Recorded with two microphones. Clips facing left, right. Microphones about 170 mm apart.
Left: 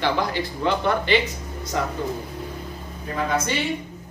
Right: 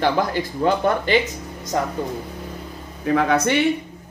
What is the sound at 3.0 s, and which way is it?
Speech, 70° right (ahead or behind).